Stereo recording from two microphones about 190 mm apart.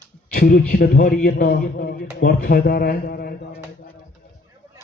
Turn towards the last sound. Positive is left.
turn(degrees=55)  # may be behind; listen again after turning